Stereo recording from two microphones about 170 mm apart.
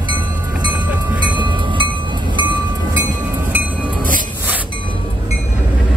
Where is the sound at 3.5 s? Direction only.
10° right (ahead or behind).